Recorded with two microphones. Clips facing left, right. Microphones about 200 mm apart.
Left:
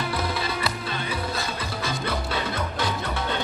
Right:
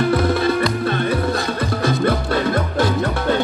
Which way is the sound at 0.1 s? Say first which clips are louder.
Right 11 dB; 55° right (ahead or behind).